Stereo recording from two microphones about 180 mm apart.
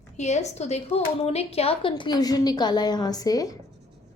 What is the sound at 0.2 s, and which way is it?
A woman's voice, 40° left (ahead or behind).